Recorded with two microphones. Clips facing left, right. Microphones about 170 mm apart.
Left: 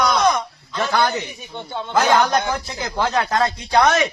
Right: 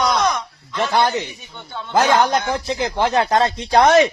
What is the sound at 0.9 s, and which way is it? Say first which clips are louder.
Speech: right 2 dB; 25° right (ahead or behind).